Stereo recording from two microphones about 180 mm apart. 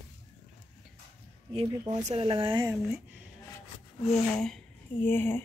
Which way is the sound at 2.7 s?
10° right (ahead or behind).